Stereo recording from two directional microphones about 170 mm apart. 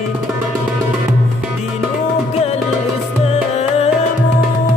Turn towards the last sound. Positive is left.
turn(degrees=40)  # may be behind; listen again after turning